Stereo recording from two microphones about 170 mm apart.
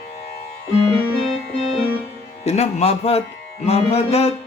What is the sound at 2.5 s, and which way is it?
Music, 40° left (ahead or behind).